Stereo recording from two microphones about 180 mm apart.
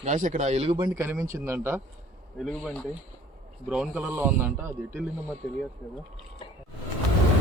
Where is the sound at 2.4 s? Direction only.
Centre (ahead or behind).